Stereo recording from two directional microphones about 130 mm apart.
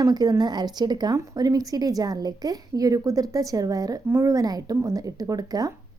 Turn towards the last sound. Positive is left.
turn(degrees=-30)  # may be behind; listen again after turning